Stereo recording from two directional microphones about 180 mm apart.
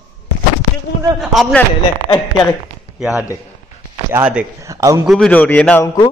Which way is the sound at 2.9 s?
5° right (ahead or behind).